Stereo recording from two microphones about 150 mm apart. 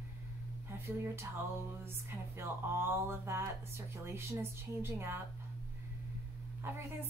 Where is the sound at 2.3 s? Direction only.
15° right (ahead or behind).